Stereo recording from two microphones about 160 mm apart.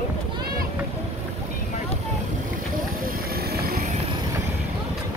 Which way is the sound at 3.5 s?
75° right (ahead or behind).